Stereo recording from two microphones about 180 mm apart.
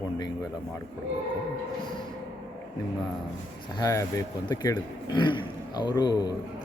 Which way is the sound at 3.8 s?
20° left (ahead or behind).